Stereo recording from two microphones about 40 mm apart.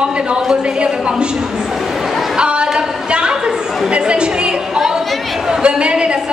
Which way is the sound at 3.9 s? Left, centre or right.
Right.